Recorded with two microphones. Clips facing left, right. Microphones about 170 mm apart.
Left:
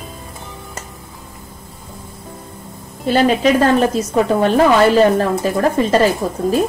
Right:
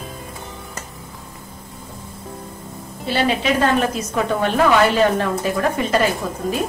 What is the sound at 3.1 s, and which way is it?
A woman's voice, 40° left (ahead or behind).